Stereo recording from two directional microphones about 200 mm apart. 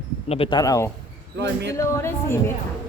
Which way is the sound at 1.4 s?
60° right (ahead or behind).